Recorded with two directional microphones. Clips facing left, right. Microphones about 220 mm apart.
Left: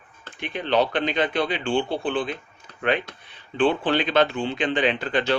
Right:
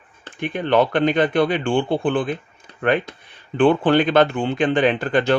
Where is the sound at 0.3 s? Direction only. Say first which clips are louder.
Right 4 dB; 50° right (ahead or behind).